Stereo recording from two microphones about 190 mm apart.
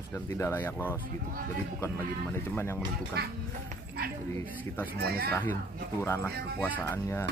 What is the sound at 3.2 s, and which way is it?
Speech, 55° right (ahead or behind).